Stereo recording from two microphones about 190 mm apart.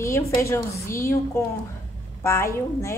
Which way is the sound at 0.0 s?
15° left (ahead or behind).